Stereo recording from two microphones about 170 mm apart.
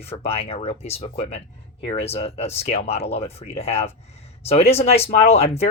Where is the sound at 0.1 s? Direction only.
35° left (ahead or behind).